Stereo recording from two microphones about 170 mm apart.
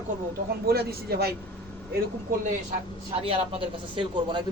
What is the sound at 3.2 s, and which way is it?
Speech, 35° right (ahead or behind).